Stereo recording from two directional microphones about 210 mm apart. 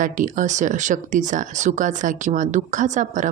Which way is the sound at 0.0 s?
40° right (ahead or behind).